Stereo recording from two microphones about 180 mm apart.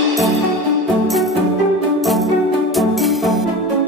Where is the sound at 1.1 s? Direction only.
Centre (ahead or behind).